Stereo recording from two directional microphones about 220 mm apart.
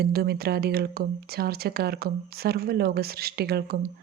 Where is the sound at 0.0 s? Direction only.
45° right (ahead or behind).